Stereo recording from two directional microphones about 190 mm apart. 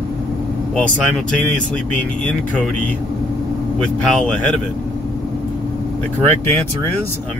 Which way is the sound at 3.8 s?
5° left (ahead or behind).